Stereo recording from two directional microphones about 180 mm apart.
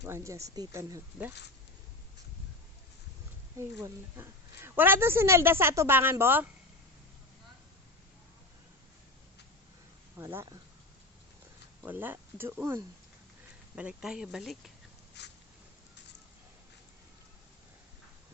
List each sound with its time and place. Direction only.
0.0 s speech: 15° right (ahead or behind)
3.6 s speech: 15° right (ahead or behind)
10.2 s speech: 15° right (ahead or behind)
11.9 s speech: 10° right (ahead or behind)
15.2 s a sound: 65° left (ahead or behind)